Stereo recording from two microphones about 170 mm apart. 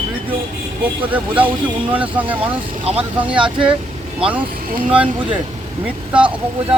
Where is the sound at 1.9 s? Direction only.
10° right (ahead or behind).